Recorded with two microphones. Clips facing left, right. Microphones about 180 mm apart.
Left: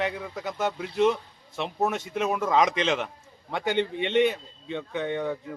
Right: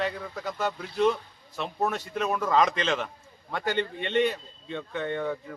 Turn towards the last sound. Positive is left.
turn(degrees=15)  # may be behind; listen again after turning